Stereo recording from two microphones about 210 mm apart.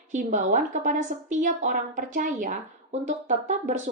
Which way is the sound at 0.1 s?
35° right (ahead or behind).